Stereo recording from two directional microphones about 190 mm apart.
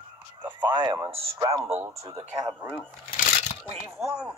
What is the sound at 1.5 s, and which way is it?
Speech, 30° right (ahead or behind).